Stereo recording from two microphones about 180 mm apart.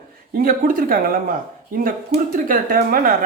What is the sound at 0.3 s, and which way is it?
Speech, 50° right (ahead or behind).